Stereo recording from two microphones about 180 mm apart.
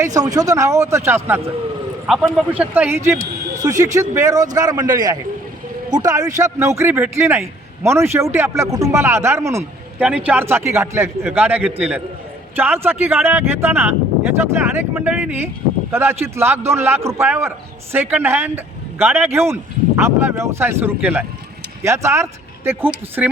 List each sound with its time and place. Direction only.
0.0 s speech: 20° right (ahead or behind)
2.0 s a man's voice: centre (ahead or behind)
2.5 s a man's voice: 10° right (ahead or behind)